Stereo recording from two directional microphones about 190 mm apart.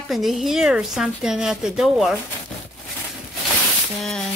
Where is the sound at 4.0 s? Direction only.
Centre (ahead or behind).